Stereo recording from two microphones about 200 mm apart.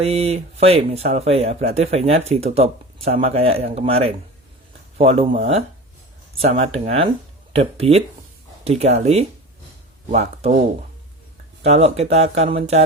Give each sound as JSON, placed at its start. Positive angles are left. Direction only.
{"t": 0.0, "sound": "speech", "side_deg": -30}
{"t": 11.6, "sound": "speech", "side_deg": -30}